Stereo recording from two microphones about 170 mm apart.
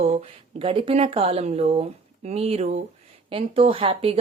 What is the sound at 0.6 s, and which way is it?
Speech, 30° right (ahead or behind).